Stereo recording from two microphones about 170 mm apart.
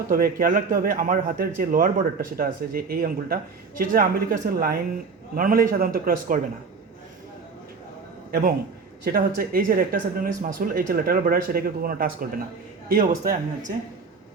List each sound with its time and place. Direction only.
0.1 s speech: 55° right (ahead or behind)
8.3 s a man's voice: 55° right (ahead or behind)